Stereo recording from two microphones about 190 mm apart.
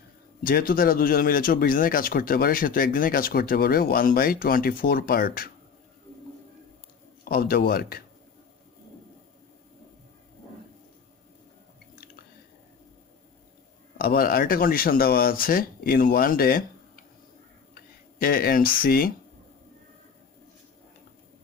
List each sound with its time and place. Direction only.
0.4 s a man's voice: 50° left (ahead or behind)
7.2 s a man's voice: 50° left (ahead or behind)
13.9 s a man's voice: 50° left (ahead or behind)
18.2 s a man's voice: 50° left (ahead or behind)